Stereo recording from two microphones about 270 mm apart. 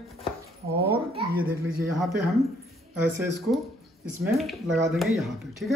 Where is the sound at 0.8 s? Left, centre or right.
Right.